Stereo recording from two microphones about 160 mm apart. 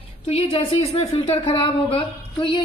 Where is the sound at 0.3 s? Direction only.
35° left (ahead or behind).